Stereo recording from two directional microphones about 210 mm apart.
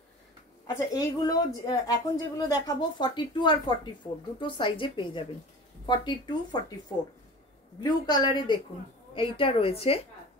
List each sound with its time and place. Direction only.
0.7 s speech: 15° left (ahead or behind)
7.8 s speech: 20° left (ahead or behind)